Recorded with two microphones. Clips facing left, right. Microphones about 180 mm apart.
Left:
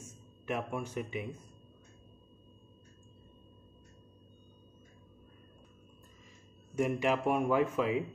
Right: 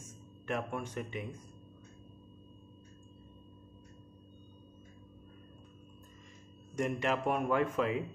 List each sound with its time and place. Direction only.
0.5 s speech: 5° left (ahead or behind)
6.7 s speech: 10° left (ahead or behind)